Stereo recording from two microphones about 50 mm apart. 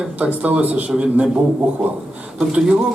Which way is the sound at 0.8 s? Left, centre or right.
Right.